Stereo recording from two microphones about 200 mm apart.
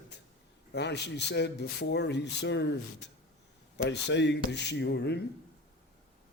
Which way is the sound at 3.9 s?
60° left (ahead or behind).